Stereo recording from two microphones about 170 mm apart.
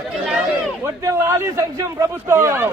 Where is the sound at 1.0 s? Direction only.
20° right (ahead or behind).